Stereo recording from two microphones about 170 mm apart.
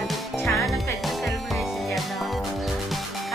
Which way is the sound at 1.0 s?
Centre (ahead or behind).